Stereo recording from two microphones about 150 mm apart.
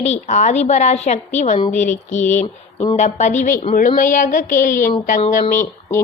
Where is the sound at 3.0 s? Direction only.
50° left (ahead or behind).